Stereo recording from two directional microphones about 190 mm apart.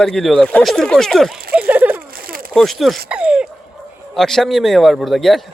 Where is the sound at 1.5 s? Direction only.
10° right (ahead or behind).